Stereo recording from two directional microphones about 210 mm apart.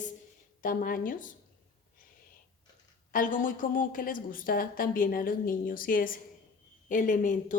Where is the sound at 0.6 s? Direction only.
40° left (ahead or behind).